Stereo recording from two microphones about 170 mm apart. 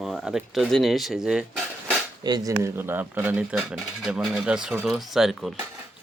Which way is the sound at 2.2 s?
20° right (ahead or behind).